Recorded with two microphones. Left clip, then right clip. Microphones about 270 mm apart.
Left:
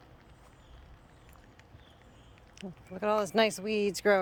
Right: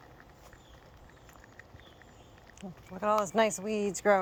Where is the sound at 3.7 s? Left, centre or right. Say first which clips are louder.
Left 2 dB; left.